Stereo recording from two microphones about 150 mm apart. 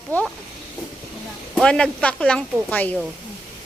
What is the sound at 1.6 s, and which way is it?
Speech, 5° left (ahead or behind).